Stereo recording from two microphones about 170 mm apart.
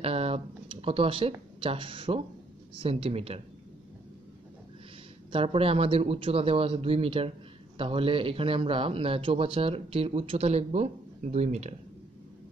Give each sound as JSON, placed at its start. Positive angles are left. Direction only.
{"t": 0.0, "sound": "a man's voice", "side_deg": -35}
{"t": 5.3, "sound": "a man's voice", "side_deg": -35}